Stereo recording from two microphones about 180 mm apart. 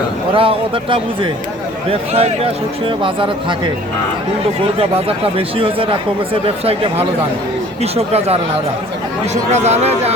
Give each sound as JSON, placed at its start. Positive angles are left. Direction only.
{"t": 0.3, "sound": "speech", "side_deg": -30}
{"t": 4.8, "sound": "speech", "side_deg": -30}